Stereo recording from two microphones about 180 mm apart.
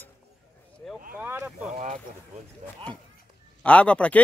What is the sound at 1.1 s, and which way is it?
Vehicle, 10° right (ahead or behind).